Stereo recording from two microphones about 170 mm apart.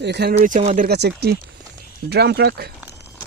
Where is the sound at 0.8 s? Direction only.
70° right (ahead or behind).